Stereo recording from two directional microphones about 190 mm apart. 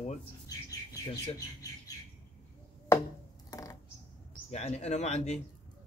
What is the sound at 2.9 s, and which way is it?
Chopping, 15° left (ahead or behind).